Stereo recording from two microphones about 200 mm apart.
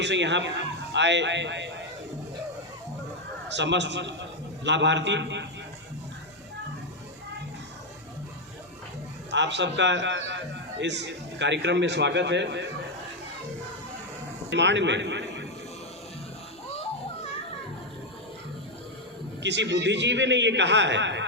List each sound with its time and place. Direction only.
0.0 s a man's voice: 60° right (ahead or behind)
3.5 s a man's voice: 60° right (ahead or behind)
9.3 s a man's voice: 60° right (ahead or behind)
14.5 s a man's voice: 60° right (ahead or behind)
19.4 s a man's voice: 60° right (ahead or behind)